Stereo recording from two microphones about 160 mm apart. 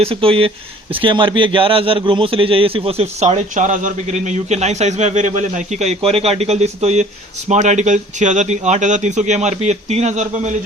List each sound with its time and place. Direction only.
0.0 s a man's voice: 35° right (ahead or behind)